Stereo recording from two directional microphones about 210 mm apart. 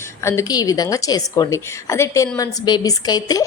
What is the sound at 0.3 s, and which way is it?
A woman's voice, 15° left (ahead or behind).